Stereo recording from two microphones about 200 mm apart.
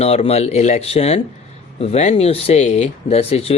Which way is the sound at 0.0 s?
30° left (ahead or behind).